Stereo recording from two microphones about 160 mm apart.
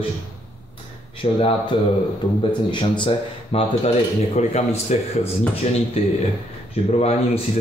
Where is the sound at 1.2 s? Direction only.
35° left (ahead or behind).